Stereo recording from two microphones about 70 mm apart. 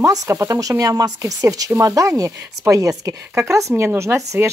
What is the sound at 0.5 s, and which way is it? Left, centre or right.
Speech, right.